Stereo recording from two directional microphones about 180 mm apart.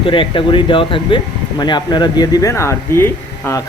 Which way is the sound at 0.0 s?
30° left (ahead or behind).